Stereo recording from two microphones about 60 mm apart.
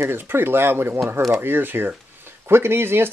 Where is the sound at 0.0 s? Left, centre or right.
Right.